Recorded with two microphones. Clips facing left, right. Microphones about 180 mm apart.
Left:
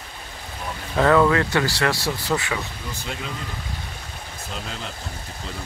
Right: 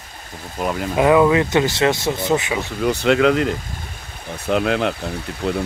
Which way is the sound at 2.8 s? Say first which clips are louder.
Right 17 dB; 75° right (ahead or behind).